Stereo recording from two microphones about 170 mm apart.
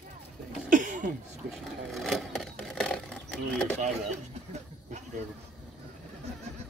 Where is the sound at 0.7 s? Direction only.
50° right (ahead or behind).